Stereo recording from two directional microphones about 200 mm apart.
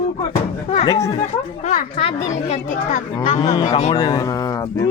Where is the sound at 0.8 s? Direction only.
20° left (ahead or behind).